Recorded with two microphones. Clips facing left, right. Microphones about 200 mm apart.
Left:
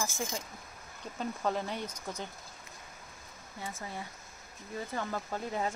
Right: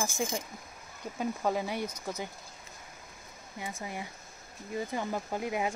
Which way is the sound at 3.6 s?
10° right (ahead or behind).